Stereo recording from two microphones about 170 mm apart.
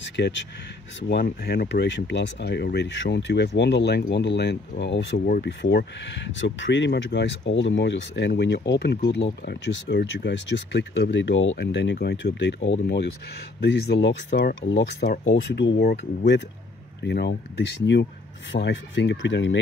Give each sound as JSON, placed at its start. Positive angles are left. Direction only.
{"t": 0.2, "sound": "speech", "side_deg": 90}